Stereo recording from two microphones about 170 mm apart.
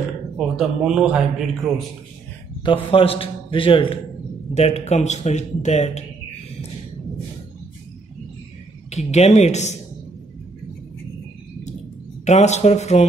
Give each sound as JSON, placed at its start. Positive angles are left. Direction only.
{"t": 0.4, "sound": "a man's voice", "side_deg": -5}
{"t": 2.6, "sound": "a man's voice", "side_deg": 30}
{"t": 8.9, "sound": "a man's voice", "side_deg": 40}
{"t": 12.3, "sound": "a man's voice", "side_deg": 40}